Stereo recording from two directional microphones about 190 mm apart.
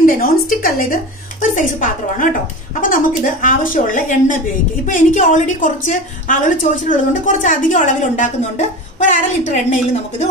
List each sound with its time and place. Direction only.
0.0 s a woman's voice: 50° left (ahead or behind)